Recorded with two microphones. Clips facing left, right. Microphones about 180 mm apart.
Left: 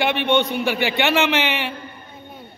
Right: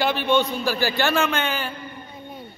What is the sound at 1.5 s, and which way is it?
Speech, 75° left (ahead or behind).